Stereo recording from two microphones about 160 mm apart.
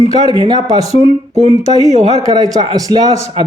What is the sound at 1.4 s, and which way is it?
Speech, 40° left (ahead or behind).